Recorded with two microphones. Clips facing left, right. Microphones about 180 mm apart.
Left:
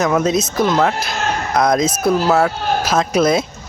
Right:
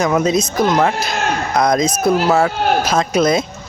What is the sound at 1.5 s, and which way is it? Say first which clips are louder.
Speech: even; centre (ahead or behind).